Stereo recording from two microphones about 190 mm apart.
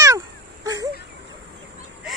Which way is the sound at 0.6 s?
20° right (ahead or behind).